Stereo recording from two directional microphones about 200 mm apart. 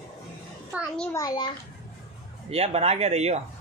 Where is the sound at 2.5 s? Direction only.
30° right (ahead or behind).